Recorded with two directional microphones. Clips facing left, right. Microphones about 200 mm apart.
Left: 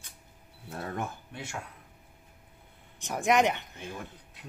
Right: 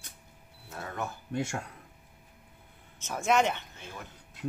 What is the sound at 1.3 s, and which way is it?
Speech, 45° right (ahead or behind).